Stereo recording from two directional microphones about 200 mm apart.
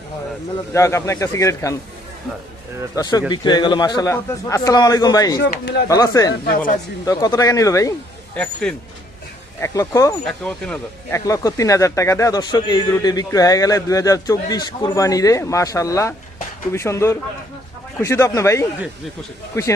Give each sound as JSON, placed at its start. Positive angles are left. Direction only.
{"t": 0.7, "sound": "a man's voice", "side_deg": 15}
{"t": 2.9, "sound": "a man's voice", "side_deg": 20}
{"t": 5.4, "sound": "speech", "side_deg": 55}
{"t": 5.9, "sound": "a man's voice", "side_deg": 20}
{"t": 8.4, "sound": "speech", "side_deg": 5}
{"t": 9.6, "sound": "a man's voice", "side_deg": 15}
{"t": 10.4, "sound": "speech", "side_deg": 5}
{"t": 11.3, "sound": "a man's voice", "side_deg": 15}